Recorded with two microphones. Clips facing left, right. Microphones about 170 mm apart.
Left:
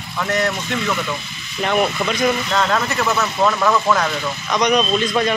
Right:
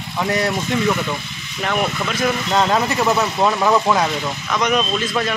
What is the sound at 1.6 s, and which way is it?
Speech, centre (ahead or behind).